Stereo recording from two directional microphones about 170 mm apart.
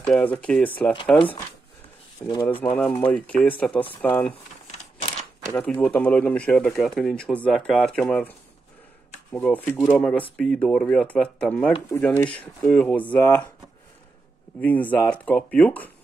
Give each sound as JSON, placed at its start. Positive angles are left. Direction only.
{"t": 0.0, "sound": "speech", "side_deg": 10}
{"t": 2.2, "sound": "speech", "side_deg": 15}
{"t": 5.5, "sound": "speech", "side_deg": 5}
{"t": 14.6, "sound": "speech", "side_deg": 10}